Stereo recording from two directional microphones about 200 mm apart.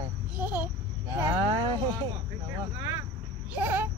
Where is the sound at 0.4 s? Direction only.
10° right (ahead or behind).